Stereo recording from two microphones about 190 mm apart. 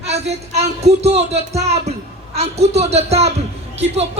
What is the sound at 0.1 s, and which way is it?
Speech, 35° right (ahead or behind).